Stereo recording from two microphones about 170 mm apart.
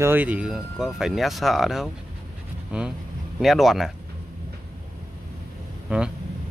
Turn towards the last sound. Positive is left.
turn(degrees=-5)  # may be behind; listen again after turning